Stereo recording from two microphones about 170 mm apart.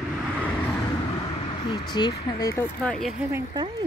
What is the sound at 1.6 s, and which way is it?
Speech, 25° left (ahead or behind).